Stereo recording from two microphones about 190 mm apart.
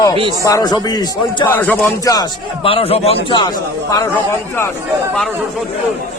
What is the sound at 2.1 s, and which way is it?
A man's voice, 25° left (ahead or behind).